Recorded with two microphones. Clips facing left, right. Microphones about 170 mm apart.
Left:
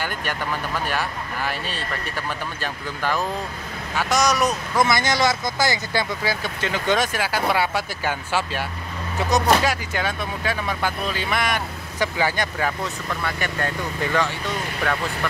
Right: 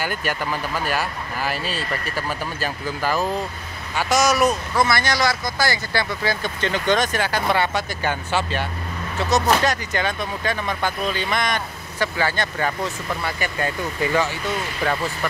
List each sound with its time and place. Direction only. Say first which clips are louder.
0.0 s speech: right 2 dB; 5° right (ahead or behind)
4.7 s speech: even; 20° left (ahead or behind)
6.2 s speech: right 2 dB; 5° left (ahead or behind)
13.1 s speech: right 1 dB; 5° right (ahead or behind)